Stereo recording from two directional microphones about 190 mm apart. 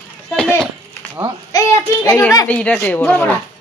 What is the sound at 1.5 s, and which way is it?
Speech, 20° left (ahead or behind).